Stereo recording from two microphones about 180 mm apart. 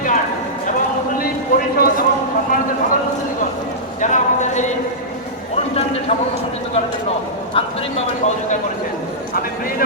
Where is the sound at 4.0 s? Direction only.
40° left (ahead or behind).